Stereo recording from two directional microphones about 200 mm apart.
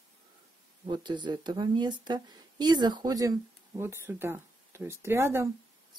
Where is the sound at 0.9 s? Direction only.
25° right (ahead or behind).